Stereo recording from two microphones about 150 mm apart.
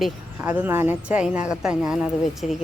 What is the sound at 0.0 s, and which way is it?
Speech, 5° right (ahead or behind).